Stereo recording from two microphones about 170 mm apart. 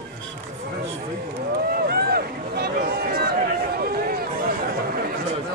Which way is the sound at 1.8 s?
65° right (ahead or behind).